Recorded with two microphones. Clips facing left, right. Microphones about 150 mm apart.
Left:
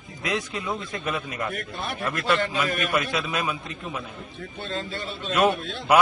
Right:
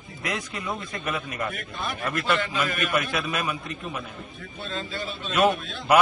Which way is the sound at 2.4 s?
45° left (ahead or behind).